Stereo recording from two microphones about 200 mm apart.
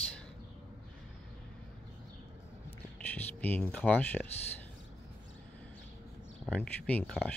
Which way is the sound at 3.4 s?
10° left (ahead or behind).